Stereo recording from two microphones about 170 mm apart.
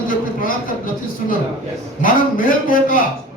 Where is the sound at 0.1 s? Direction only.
55° left (ahead or behind).